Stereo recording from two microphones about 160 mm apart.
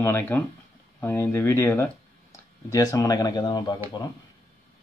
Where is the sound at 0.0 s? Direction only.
10° left (ahead or behind).